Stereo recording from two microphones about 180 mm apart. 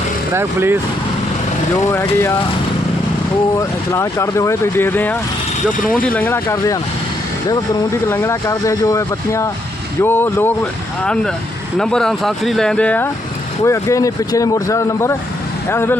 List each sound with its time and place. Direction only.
0.3 s speech: 15° right (ahead or behind)
1.9 s speech: 15° left (ahead or behind)
3.6 s speech: 15° left (ahead or behind)
8.1 s speech: 15° left (ahead or behind)